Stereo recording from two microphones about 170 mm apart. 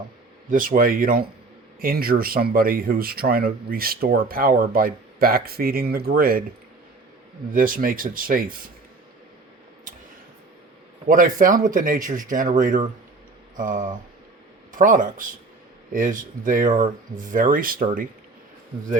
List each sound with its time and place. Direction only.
0.5 s speech: 55° right (ahead or behind)
7.5 s speech: 55° right (ahead or behind)
11.1 s speech: 55° right (ahead or behind)